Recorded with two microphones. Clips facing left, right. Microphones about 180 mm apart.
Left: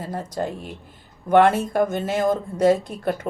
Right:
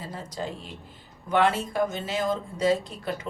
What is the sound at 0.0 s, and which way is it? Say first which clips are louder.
Speech: left 7 dB; 50° left (ahead or behind).